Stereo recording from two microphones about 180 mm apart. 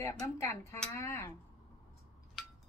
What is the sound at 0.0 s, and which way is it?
Speech, 15° left (ahead or behind).